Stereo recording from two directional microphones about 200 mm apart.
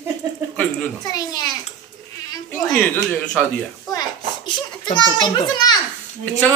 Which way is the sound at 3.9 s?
20° left (ahead or behind).